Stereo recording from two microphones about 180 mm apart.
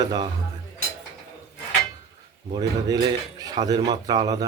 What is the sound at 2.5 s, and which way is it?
Speech, 20° right (ahead or behind).